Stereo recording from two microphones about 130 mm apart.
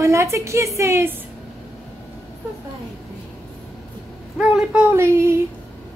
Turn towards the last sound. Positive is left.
turn(degrees=-20)  # may be behind; listen again after turning